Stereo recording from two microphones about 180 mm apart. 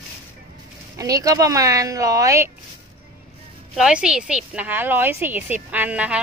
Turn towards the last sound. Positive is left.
turn(degrees=-5)  # may be behind; listen again after turning